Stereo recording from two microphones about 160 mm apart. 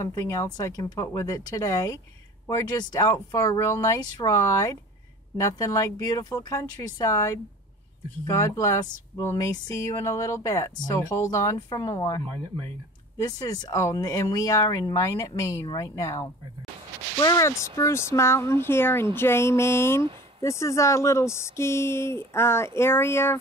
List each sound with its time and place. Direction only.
0.0 s speech: 20° left (ahead or behind)
13.2 s speech: 20° left (ahead or behind)
20.0 s a sound: 35° right (ahead or behind)
20.4 s speech: 20° left (ahead or behind)